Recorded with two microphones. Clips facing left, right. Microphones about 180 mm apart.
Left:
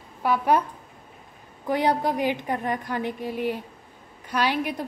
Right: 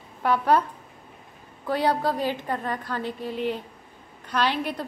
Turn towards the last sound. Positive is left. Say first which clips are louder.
# left 1 dB
turn(degrees=15)  # may be behind; listen again after turning